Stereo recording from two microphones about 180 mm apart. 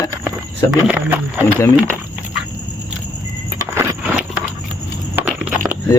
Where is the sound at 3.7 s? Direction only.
10° right (ahead or behind).